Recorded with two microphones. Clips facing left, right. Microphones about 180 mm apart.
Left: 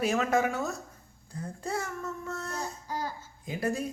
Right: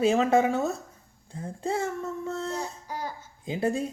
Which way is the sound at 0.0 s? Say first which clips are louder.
Right 5 dB; 25° right (ahead or behind).